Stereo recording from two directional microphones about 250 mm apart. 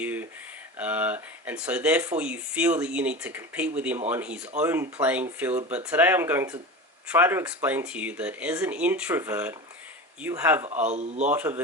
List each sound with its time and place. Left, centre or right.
0.0 s a sound: centre
0.8 s speech: centre
10.7 s a man's voice: right
11.3 s speech: centre